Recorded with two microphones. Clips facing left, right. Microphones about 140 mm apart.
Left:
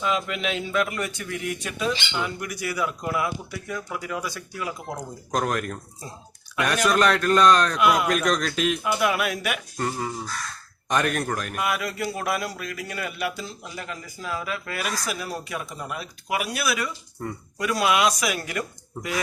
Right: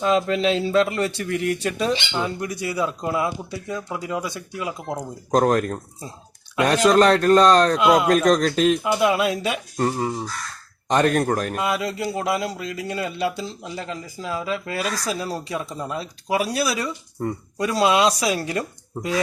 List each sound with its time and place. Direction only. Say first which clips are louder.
0.0 s a man's voice: right 7 dB; 35° right (ahead or behind)
5.3 s a man's voice: right 7 dB; 35° right (ahead or behind)
7.8 s a man's voice: right 4 dB; 25° right (ahead or behind)
8.8 s a man's voice: right 4 dB; 20° right (ahead or behind)
11.6 s speech: right 3 dB; 25° right (ahead or behind)